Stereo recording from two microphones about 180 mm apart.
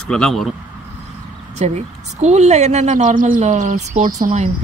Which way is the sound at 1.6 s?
40° right (ahead or behind).